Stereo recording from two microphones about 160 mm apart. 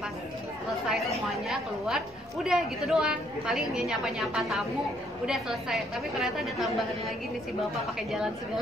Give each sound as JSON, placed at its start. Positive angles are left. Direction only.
{"t": 0.8, "sound": "a woman's voice", "side_deg": 0}